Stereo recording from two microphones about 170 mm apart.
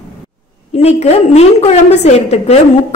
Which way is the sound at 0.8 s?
40° left (ahead or behind).